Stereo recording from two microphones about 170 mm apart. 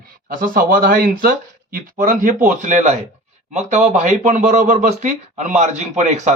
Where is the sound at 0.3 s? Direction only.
55° right (ahead or behind).